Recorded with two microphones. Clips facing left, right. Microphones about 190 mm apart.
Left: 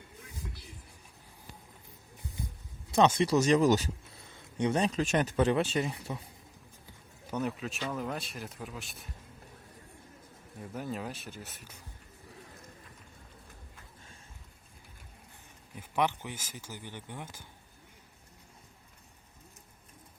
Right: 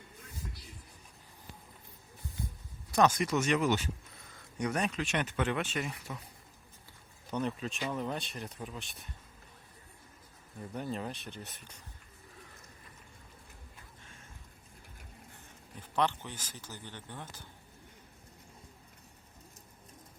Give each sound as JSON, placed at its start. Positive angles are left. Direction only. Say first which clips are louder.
{"t": 2.9, "sound": "speech", "louder": "left 3 dB", "side_deg": 25}
{"t": 7.3, "sound": "speech", "louder": "left 1 dB", "side_deg": 5}
{"t": 10.6, "sound": "speech", "louder": "even", "side_deg": 5}
{"t": 15.7, "sound": "speech", "louder": "left 1 dB", "side_deg": 10}